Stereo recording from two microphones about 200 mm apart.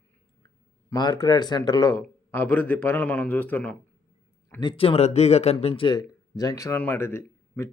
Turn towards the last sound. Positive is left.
turn(degrees=10)  # may be behind; listen again after turning